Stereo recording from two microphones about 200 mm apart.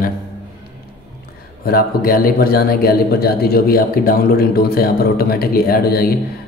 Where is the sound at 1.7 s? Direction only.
50° left (ahead or behind).